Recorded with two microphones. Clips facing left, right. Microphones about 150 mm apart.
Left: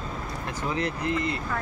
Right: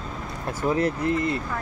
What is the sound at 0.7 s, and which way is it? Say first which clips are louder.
Speech: right 3 dB; 45° right (ahead or behind).